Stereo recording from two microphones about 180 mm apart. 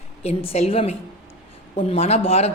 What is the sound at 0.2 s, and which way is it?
A woman's voice, 35° left (ahead or behind).